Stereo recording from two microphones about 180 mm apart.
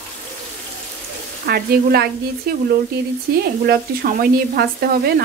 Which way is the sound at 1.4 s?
60° right (ahead or behind).